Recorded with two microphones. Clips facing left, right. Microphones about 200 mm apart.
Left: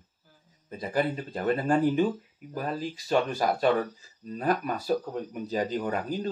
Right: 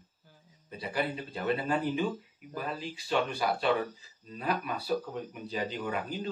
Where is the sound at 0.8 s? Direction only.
45° left (ahead or behind).